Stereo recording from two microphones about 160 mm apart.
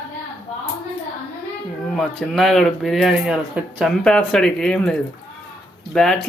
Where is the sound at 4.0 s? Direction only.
5° left (ahead or behind).